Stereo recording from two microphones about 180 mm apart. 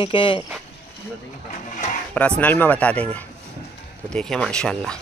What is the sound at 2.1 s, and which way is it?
Speech, 5° left (ahead or behind).